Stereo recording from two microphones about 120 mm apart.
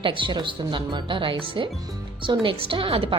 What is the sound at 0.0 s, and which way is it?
A woman's voice, 45° right (ahead or behind).